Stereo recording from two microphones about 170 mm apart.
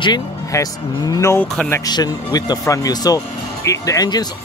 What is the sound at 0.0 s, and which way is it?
Speech, 25° left (ahead or behind).